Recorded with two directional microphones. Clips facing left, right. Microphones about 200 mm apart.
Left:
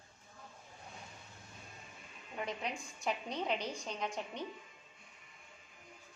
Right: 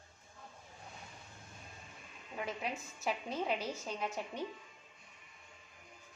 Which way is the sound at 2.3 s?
5° right (ahead or behind).